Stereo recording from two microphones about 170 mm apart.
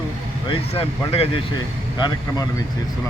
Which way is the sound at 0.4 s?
35° left (ahead or behind).